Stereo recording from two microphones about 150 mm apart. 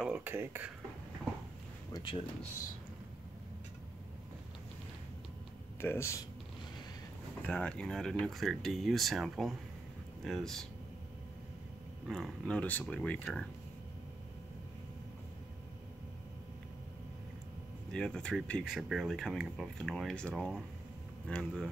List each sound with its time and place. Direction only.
0.0 s speech: 10° right (ahead or behind)
5.8 s speech: 15° left (ahead or behind)
7.4 s speech: 5° left (ahead or behind)
12.1 s speech: 5° left (ahead or behind)
17.9 s speech: 5° left (ahead or behind)